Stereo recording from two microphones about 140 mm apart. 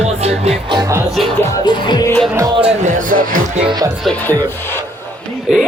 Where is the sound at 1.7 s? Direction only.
30° left (ahead or behind).